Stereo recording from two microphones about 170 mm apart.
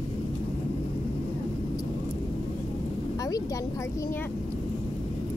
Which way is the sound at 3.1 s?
20° left (ahead or behind).